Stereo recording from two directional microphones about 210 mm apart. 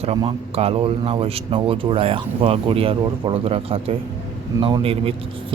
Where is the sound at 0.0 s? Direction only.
25° right (ahead or behind).